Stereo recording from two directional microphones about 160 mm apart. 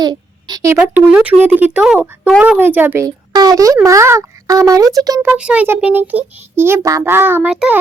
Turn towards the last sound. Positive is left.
turn(degrees=-5)  # may be behind; listen again after turning